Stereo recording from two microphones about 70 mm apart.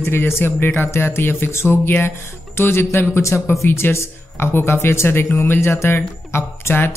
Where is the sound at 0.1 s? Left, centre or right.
Left.